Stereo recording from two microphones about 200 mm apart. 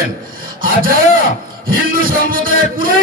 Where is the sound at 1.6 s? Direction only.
45° right (ahead or behind).